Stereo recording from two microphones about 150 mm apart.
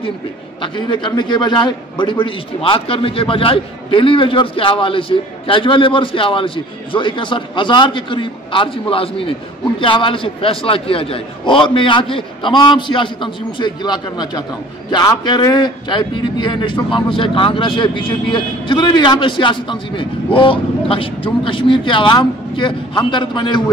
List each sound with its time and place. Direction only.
0.6 s a man's voice: 35° left (ahead or behind)